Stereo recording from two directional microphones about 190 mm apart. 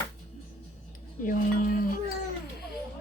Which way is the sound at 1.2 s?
45° left (ahead or behind).